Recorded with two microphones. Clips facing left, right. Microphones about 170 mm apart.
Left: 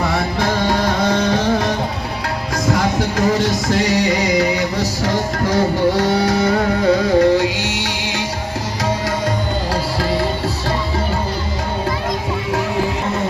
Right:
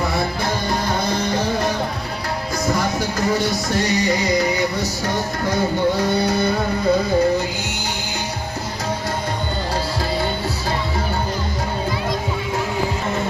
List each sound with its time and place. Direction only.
0.3 s music: 90° left
3.2 s music: 85° left